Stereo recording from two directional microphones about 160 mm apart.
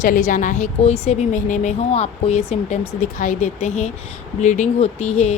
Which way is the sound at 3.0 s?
50° left (ahead or behind).